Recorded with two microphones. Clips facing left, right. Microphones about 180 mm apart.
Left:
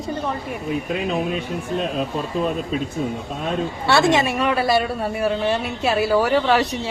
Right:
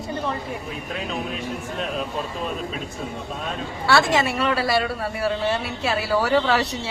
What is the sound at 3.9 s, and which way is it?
A woman's voice, 20° left (ahead or behind).